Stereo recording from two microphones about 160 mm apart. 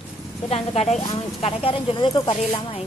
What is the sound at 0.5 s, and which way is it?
Speech, 40° left (ahead or behind).